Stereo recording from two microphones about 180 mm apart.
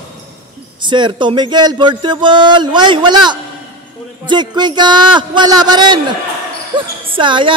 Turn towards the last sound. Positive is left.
turn(degrees=-25)  # may be behind; listen again after turning